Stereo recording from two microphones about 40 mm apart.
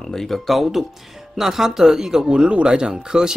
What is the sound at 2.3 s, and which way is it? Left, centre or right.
Speech, right.